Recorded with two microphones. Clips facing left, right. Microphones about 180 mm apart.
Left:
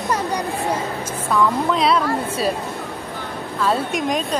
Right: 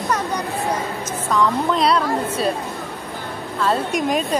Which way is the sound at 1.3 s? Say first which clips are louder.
Even; centre (ahead or behind).